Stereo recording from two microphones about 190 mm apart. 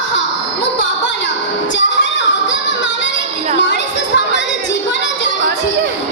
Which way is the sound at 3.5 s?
70° left (ahead or behind).